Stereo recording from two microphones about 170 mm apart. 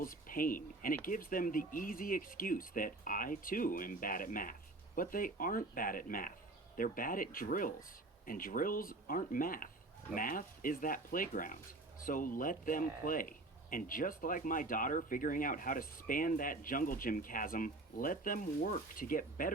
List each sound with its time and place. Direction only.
0.0 s speech: 55° left (ahead or behind)